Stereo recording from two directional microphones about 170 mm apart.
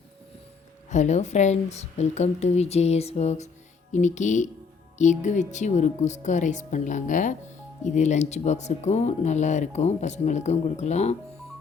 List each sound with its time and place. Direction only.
0.9 s a woman's voice: 45° left (ahead or behind)